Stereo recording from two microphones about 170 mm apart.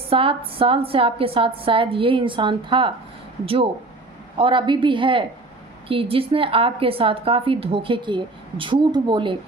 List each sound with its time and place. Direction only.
0.1 s a woman's voice: 35° right (ahead or behind)